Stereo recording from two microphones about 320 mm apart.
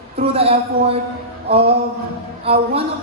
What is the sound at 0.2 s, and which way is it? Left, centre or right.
A woman's voice, centre.